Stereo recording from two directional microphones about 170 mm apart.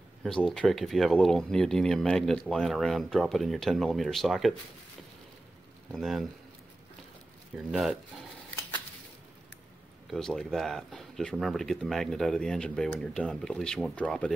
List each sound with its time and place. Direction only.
0.2 s speech: 5° left (ahead or behind)
5.9 s speech: centre (ahead or behind)
7.5 s speech: 5° right (ahead or behind)
10.0 s speech: centre (ahead or behind)